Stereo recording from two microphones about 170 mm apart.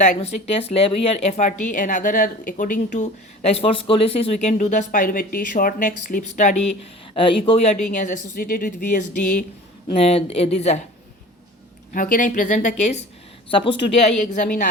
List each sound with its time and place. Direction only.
0.0 s a woman's voice: 40° left (ahead or behind)
7.1 s speech: 30° left (ahead or behind)
7.9 s a woman's voice: 50° left (ahead or behind)
9.9 s speech: 35° left (ahead or behind)
11.9 s a woman's voice: 50° left (ahead or behind)
13.5 s speech: 30° left (ahead or behind)
14.2 s a woman's voice: 45° left (ahead or behind)